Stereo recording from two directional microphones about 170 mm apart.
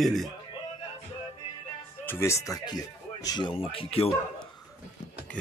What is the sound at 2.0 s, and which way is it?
Speech, 15° left (ahead or behind).